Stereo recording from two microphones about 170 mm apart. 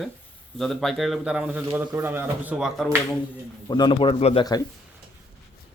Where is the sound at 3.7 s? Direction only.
25° left (ahead or behind).